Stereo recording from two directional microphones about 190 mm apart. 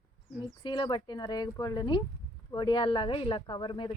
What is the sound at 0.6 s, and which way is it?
Speech, 25° left (ahead or behind).